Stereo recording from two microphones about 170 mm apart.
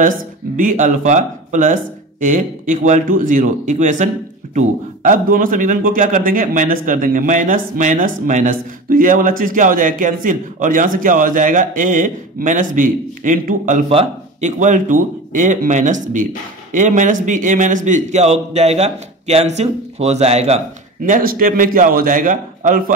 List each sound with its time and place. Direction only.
0.6 s speech: 50° right (ahead or behind)